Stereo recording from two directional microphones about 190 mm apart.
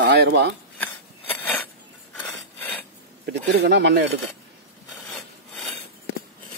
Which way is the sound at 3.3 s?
60° right (ahead or behind).